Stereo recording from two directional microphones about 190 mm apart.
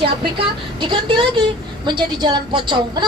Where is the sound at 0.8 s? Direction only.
25° right (ahead or behind).